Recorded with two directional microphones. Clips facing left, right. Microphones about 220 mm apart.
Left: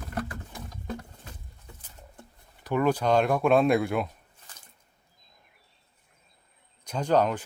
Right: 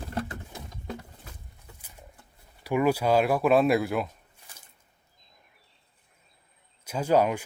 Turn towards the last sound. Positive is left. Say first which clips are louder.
# right 1 dB
turn(degrees=-10)  # may be behind; listen again after turning